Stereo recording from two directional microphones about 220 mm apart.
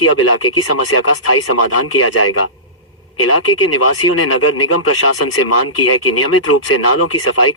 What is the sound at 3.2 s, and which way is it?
Speech, 80° left.